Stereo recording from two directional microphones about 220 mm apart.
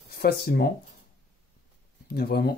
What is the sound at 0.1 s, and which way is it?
Speech, 45° left (ahead or behind).